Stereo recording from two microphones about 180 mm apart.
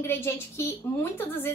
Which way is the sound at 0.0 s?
15° left (ahead or behind).